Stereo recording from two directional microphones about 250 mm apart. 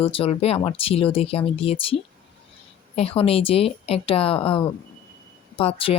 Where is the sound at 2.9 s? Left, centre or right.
Left.